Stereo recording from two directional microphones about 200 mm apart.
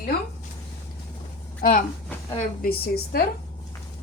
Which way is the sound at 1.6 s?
45° left (ahead or behind).